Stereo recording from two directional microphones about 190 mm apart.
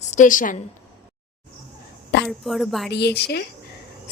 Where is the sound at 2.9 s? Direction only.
60° left (ahead or behind).